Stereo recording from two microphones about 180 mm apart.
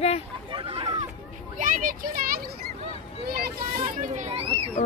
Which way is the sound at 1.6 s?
45° right (ahead or behind).